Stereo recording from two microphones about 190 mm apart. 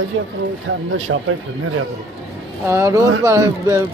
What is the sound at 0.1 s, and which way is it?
Speech, 90° right.